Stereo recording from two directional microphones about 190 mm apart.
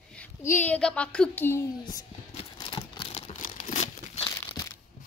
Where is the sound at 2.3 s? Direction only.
25° left (ahead or behind).